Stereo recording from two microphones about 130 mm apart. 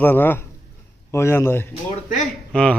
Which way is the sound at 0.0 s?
15° left (ahead or behind).